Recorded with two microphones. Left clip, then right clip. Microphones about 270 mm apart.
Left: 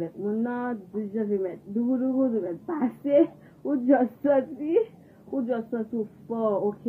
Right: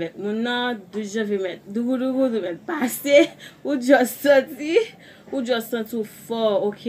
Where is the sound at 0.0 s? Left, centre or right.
Right.